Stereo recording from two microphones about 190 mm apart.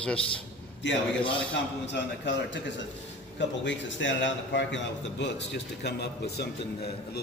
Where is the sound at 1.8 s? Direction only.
65° left (ahead or behind).